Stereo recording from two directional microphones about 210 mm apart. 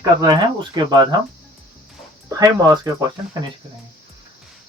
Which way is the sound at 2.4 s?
15° right (ahead or behind).